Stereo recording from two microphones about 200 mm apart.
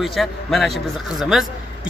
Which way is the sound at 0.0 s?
Centre (ahead or behind).